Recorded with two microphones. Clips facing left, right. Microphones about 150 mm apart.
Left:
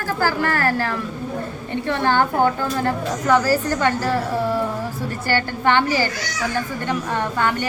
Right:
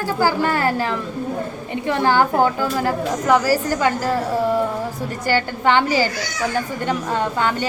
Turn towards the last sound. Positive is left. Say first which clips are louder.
# right 1 dB
turn(degrees=-15)  # may be behind; listen again after turning